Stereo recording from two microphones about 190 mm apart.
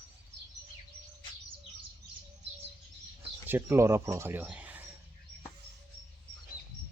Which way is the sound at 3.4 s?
10° right (ahead or behind).